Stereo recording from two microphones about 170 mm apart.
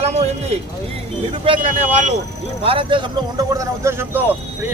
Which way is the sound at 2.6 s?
30° right (ahead or behind).